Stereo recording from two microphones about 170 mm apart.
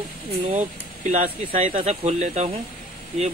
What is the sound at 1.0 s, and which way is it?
Speech, 45° right (ahead or behind).